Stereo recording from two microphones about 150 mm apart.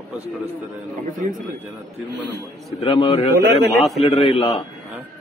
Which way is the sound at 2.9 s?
35° left (ahead or behind).